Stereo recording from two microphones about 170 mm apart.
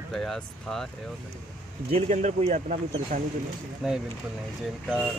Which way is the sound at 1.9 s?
45° right (ahead or behind).